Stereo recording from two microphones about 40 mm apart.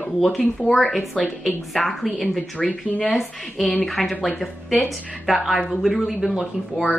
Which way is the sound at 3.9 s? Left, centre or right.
Centre.